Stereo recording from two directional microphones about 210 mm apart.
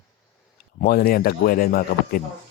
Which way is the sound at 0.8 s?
45° left (ahead or behind).